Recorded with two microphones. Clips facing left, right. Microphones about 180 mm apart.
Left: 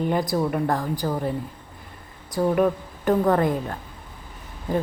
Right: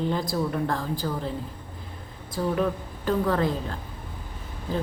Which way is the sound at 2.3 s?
50° left (ahead or behind).